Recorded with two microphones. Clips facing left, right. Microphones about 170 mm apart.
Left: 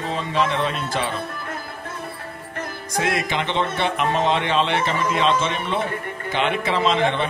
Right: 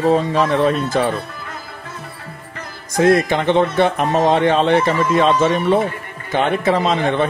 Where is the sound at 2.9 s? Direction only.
45° right (ahead or behind).